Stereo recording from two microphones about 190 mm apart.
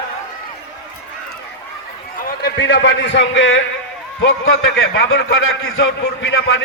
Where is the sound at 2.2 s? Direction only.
60° left (ahead or behind).